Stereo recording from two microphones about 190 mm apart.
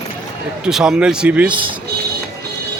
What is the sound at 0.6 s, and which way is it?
Speech, 5° right (ahead or behind).